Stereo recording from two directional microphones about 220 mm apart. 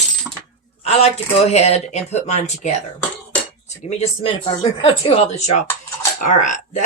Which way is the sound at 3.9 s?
30° left (ahead or behind).